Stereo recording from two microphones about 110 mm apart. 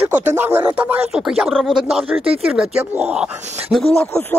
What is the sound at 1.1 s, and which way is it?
Speech, 5° right (ahead or behind).